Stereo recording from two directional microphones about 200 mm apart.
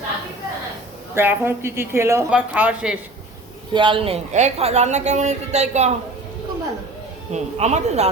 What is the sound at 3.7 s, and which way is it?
A woman's voice, 25° right (ahead or behind).